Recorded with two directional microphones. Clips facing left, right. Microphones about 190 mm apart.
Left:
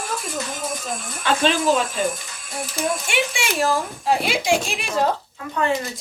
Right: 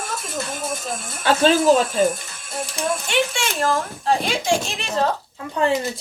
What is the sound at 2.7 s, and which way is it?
Speech, 10° left (ahead or behind).